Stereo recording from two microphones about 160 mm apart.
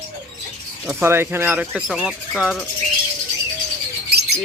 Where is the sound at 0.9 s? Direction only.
15° right (ahead or behind).